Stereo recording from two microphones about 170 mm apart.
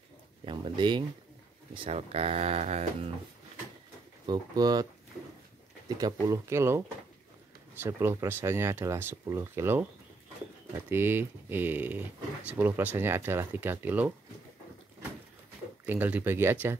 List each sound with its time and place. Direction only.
0.5 s speech: 30° right (ahead or behind)
4.3 s speech: 25° right (ahead or behind)
5.9 s speech: 25° right (ahead or behind)
7.8 s speech: 15° right (ahead or behind)
15.8 s speech: 10° right (ahead or behind)